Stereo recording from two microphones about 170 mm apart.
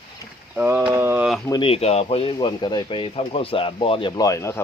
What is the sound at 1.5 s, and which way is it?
Speech, 30° left (ahead or behind).